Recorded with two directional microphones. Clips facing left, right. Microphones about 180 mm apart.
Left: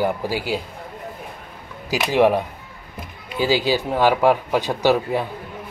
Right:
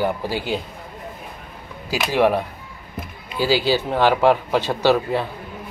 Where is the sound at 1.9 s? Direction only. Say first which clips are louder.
Left 1 dB; 15° left (ahead or behind).